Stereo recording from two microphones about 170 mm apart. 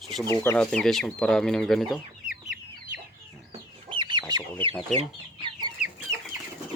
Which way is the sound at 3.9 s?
25° right (ahead or behind).